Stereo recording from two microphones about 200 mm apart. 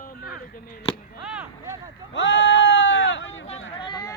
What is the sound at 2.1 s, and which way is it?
Sheep, 65° left (ahead or behind).